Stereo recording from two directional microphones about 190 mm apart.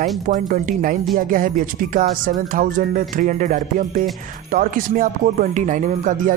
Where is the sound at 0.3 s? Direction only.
45° right (ahead or behind).